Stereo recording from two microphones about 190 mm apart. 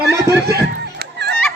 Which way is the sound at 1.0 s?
60° right (ahead or behind).